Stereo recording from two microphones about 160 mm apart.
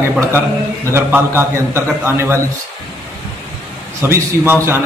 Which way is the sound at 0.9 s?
15° right (ahead or behind).